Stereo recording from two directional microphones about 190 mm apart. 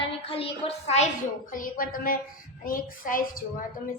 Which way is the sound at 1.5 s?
45° left (ahead or behind).